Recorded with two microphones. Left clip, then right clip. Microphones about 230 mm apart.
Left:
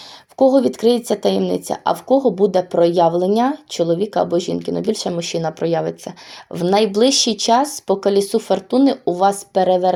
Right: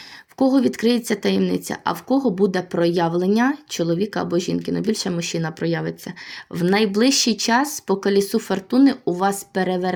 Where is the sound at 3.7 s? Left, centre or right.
Right.